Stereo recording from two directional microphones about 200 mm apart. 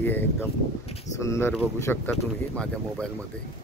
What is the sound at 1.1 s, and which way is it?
Speech, 15° left (ahead or behind).